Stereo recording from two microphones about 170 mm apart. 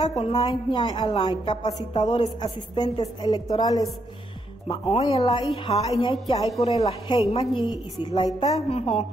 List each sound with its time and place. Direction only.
0.1 s a woman's voice: 35° left (ahead or behind)
2.0 s a woman's voice: 40° left (ahead or behind)
2.4 s a woman's voice: 25° left (ahead or behind)
4.6 s a woman's voice: 35° left (ahead or behind)
8.5 s a woman's voice: 35° left (ahead or behind)